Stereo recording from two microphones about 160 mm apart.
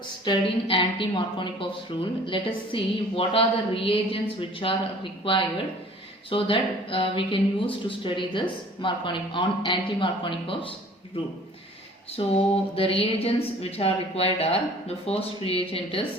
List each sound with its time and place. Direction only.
0.3 s a woman's voice: 35° left (ahead or behind)
12.2 s a woman's voice: 30° left (ahead or behind)